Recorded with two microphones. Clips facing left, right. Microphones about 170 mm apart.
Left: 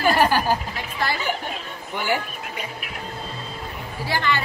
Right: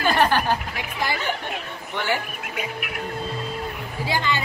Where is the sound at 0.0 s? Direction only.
10° left (ahead or behind).